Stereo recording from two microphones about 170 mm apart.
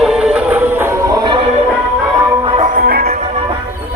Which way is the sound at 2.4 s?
30° right (ahead or behind).